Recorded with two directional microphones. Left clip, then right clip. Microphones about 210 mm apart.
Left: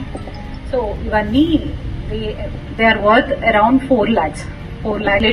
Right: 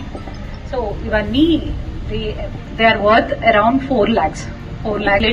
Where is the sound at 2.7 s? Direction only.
35° left (ahead or behind).